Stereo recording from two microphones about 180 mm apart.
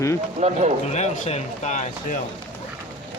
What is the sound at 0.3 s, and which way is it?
Speech, 40° right (ahead or behind).